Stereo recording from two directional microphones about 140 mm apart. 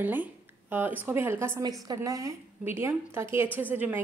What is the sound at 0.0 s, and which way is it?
A woman's voice, 15° right (ahead or behind).